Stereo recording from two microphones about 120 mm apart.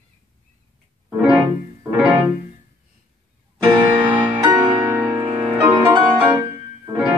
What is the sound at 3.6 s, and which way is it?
Music, 15° right (ahead or behind).